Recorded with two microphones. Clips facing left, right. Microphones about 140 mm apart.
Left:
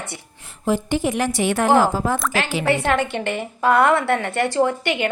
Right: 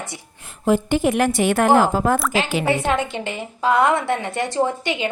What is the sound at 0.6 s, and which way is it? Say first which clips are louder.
A woman's voice: right 3 dB; 55° right (ahead or behind).